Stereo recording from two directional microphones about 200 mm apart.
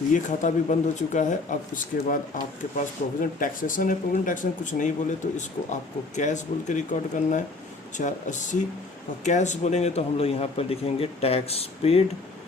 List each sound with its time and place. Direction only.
0.1 s speech: 40° left (ahead or behind)
7.9 s speech: 40° left (ahead or behind)